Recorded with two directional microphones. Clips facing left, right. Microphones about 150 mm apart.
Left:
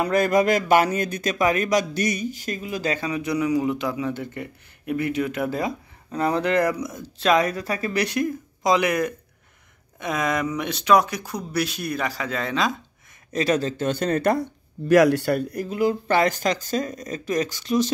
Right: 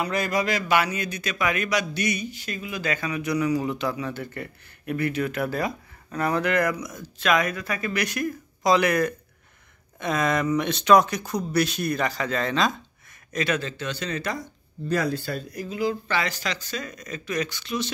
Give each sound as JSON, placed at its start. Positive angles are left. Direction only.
{"t": 0.0, "sound": "speech", "side_deg": 50}
{"t": 13.3, "sound": "speech", "side_deg": 35}